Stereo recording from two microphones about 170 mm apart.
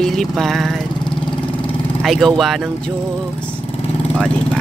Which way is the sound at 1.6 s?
Centre (ahead or behind).